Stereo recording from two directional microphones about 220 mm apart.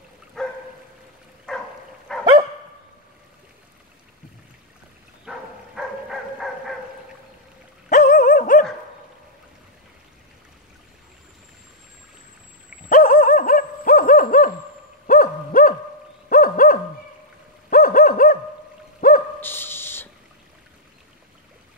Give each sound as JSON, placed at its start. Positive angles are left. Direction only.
{"t": 0.4, "sound": "dog", "side_deg": 0}
{"t": 5.3, "sound": "a sound", "side_deg": 0}
{"t": 7.9, "sound": "dog", "side_deg": 35}
{"t": 12.9, "sound": "dog", "side_deg": 40}
{"t": 15.0, "sound": "bird", "side_deg": 40}
{"t": 16.3, "sound": "dog", "side_deg": 40}
{"t": 18.9, "sound": "a sound", "side_deg": 40}
{"t": 19.4, "sound": "dog", "side_deg": 10}